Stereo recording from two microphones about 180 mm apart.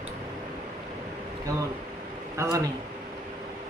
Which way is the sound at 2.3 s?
15° right (ahead or behind).